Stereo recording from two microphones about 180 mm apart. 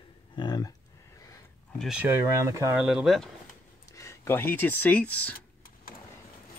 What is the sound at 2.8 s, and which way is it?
Speech, 5° right (ahead or behind).